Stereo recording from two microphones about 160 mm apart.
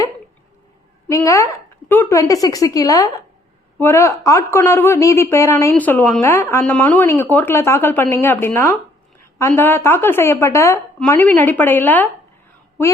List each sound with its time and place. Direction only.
1.0 s a woman's voice: 20° left (ahead or behind)